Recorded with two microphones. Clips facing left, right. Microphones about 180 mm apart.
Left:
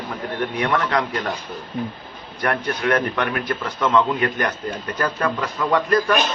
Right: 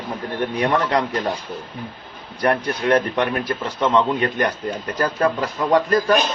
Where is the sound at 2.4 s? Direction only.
30° right (ahead or behind).